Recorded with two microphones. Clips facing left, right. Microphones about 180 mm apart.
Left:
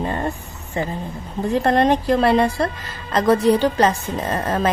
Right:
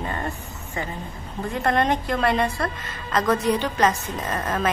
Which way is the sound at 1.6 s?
35° left (ahead or behind).